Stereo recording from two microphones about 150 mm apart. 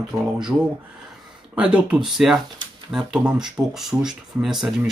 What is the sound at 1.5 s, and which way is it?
Speech, 10° right (ahead or behind).